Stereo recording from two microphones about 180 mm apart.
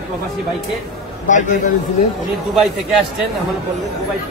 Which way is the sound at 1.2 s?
45° left (ahead or behind).